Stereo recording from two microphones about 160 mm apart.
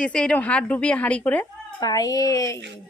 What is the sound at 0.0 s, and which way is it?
Speech, 5° left (ahead or behind).